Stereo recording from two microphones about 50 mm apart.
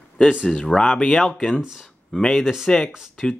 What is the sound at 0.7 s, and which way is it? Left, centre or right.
Speech, centre.